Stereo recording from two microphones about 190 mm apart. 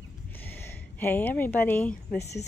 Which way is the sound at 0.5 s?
10° left (ahead or behind).